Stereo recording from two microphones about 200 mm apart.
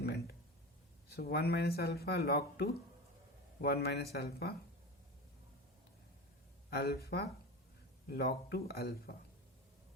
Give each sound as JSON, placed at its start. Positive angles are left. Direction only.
{"t": 0.0, "sound": "a sound", "side_deg": 50}
{"t": 1.1, "sound": "speech", "side_deg": 55}
{"t": 6.7, "sound": "speech", "side_deg": 55}